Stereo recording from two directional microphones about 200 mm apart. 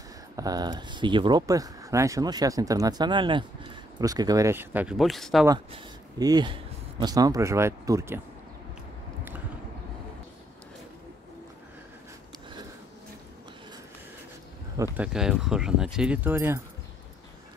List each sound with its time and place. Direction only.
0.4 s speech: 20° right (ahead or behind); by 5.5 s centre (ahead or behind)
5.5 s speech: 20° right (ahead or behind)
15.0 s speech: 5° right (ahead or behind)